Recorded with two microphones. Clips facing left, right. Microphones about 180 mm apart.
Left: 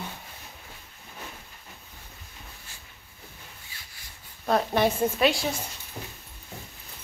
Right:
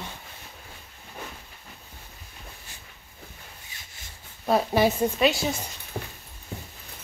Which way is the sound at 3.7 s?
20° right (ahead or behind).